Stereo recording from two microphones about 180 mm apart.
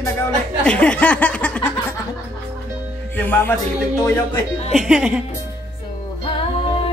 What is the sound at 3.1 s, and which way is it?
Speech, 10° left (ahead or behind).